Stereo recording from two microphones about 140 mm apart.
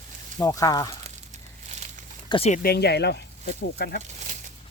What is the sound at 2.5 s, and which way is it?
Speech, 65° left (ahead or behind).